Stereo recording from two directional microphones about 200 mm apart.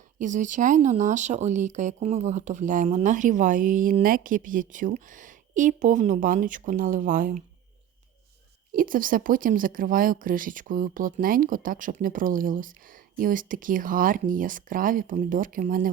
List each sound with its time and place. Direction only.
0.2 s speech: 40° right (ahead or behind)
8.7 s speech: 45° right (ahead or behind)